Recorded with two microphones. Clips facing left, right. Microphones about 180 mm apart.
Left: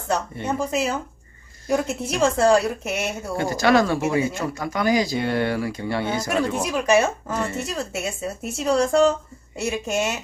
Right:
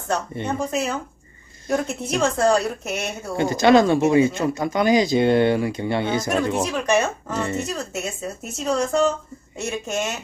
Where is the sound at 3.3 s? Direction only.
20° right (ahead or behind).